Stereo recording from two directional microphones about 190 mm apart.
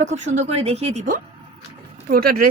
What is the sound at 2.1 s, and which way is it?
Speech, 50° right (ahead or behind).